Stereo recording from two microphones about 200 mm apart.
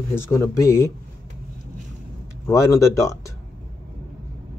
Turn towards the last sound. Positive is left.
turn(degrees=15)  # may be behind; listen again after turning